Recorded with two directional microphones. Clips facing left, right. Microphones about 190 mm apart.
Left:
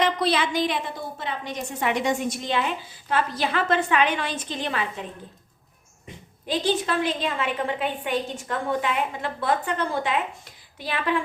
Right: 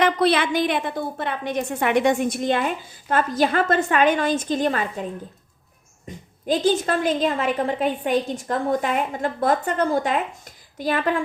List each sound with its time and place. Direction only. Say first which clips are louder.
0.0 s a woman's voice: right 4 dB; 60° right (ahead or behind)
6.1 s a woman's voice: right 6 dB; 45° right (ahead or behind)